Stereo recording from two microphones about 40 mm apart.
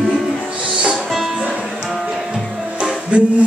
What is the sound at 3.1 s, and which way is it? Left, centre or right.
Music, right.